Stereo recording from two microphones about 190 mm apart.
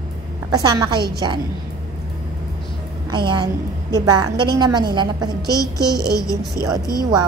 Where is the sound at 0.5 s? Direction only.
20° right (ahead or behind).